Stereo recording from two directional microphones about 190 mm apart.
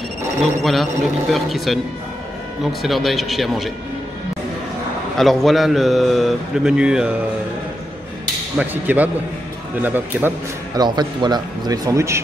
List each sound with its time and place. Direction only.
0.4 s a man's voice: centre (ahead or behind)
2.8 s a man's voice: centre (ahead or behind)
5.1 s a man's voice: centre (ahead or behind)
8.5 s speech: 10° right (ahead or behind)
10.7 s a man's voice: 20° right (ahead or behind)